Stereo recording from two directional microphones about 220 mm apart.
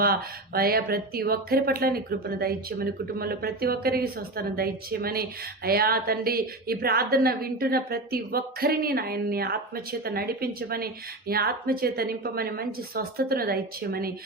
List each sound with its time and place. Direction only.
0.0 s a woman's voice: 45° right (ahead or behind)